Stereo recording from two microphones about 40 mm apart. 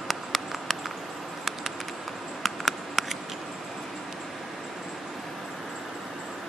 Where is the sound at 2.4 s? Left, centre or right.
Centre.